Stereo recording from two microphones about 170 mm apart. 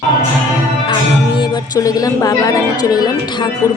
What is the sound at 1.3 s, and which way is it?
Speech, 20° left (ahead or behind).